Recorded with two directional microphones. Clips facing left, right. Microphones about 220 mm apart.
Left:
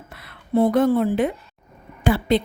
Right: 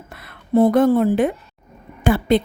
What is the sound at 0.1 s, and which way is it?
A woman's voice, 50° right (ahead or behind).